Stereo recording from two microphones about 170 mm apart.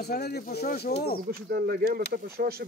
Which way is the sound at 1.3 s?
65° right (ahead or behind).